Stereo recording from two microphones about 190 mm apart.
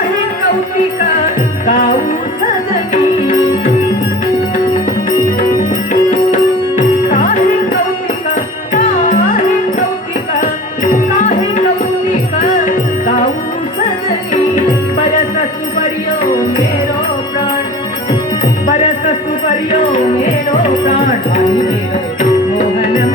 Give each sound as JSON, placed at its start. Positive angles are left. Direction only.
{"t": 1.6, "sound": "music", "side_deg": 45}
{"t": 5.9, "sound": "music", "side_deg": 40}
{"t": 8.7, "sound": "music", "side_deg": 40}
{"t": 10.4, "sound": "music", "side_deg": 45}